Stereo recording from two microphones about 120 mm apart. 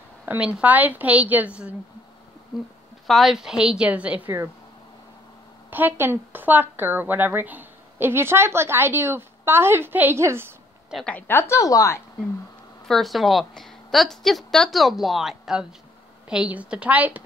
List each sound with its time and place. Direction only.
0.2 s a woman's voice: 10° right (ahead or behind)
5.7 s speech: 15° right (ahead or behind)
11.1 s a woman's voice: 15° left (ahead or behind)
12.8 s a woman's voice: centre (ahead or behind)